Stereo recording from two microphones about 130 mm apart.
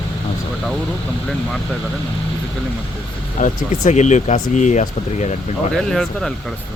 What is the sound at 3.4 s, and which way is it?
Speech, 65° left (ahead or behind).